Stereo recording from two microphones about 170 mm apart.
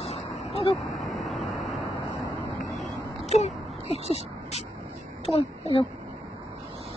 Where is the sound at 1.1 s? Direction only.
Centre (ahead or behind).